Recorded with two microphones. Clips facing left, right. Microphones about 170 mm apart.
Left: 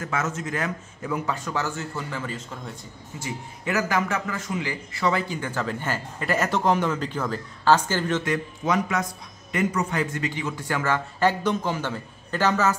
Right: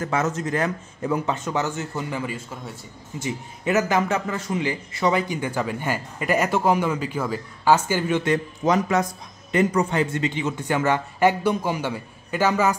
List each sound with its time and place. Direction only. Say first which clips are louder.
0.0 s speech: right 4 dB; 35° right (ahead or behind); by 2.8 s 5° right (ahead or behind)
3.2 s a man's voice: right 4 dB; 20° right (ahead or behind)
8.2 s a man's voice: right 4 dB; 30° right (ahead or behind); by 12.7 s 10° right (ahead or behind)